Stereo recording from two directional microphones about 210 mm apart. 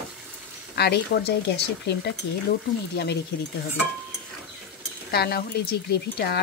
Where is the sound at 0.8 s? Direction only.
50° left (ahead or behind).